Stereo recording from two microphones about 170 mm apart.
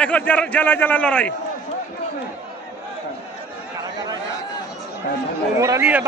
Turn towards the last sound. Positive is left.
turn(degrees=-10)  # may be behind; listen again after turning